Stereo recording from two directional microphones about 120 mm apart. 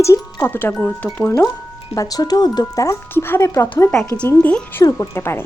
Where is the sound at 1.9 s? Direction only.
30° left (ahead or behind).